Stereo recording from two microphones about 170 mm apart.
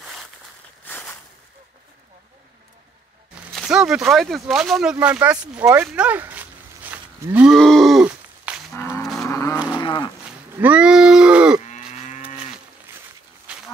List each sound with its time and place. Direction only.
0.8 s a sound: 10° left (ahead or behind)
3.3 s speech: 5° right (ahead or behind)
5.9 s cattle: 5° right (ahead or behind)
7.5 s a sound: centre (ahead or behind)
8.7 s cattle: 15° left (ahead or behind)
9.0 s moo: centre (ahead or behind)
9.3 s cattle: 20° left (ahead or behind)
9.8 s cattle: 30° left (ahead or behind)
10.6 s a sound: 5° right (ahead or behind)
11.6 s moo: 45° left (ahead or behind)